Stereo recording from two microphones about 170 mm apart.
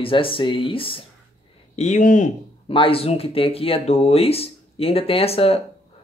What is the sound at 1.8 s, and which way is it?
Speech, 45° left (ahead or behind).